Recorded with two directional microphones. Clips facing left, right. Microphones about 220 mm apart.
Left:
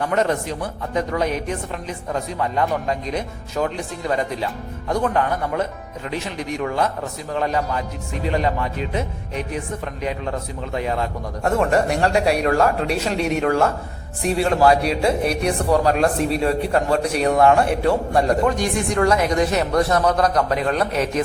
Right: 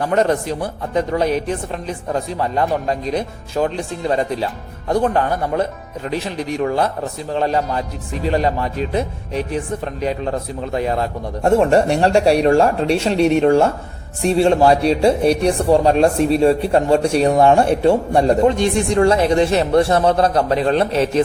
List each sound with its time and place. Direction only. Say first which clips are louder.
0.0 s speech: right 4 dB; 35° right (ahead or behind)